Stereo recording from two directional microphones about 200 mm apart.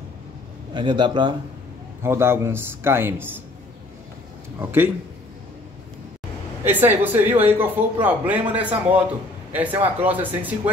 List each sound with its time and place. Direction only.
0.7 s a man's voice: 20° right (ahead or behind)
2.0 s speech: 10° right (ahead or behind)
4.6 s speech: 10° right (ahead or behind)
6.6 s speech: 10° right (ahead or behind)